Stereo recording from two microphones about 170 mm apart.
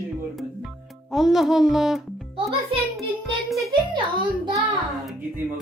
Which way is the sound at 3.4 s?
Centre (ahead or behind).